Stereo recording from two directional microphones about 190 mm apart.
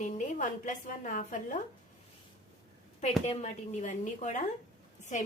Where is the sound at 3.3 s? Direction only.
35° left (ahead or behind).